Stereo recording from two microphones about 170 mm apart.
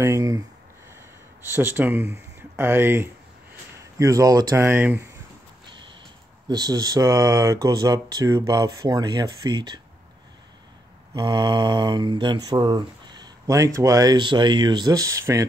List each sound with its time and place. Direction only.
0.0 s speech: 20° right (ahead or behind)
1.5 s speech: 10° right (ahead or behind)
6.5 s speech: 20° right (ahead or behind)
11.1 s speech: 25° right (ahead or behind)